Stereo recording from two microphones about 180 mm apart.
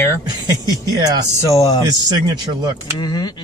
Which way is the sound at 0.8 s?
20° right (ahead or behind).